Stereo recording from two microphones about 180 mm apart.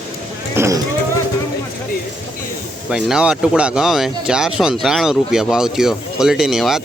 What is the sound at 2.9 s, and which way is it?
Speech, 5° right (ahead or behind).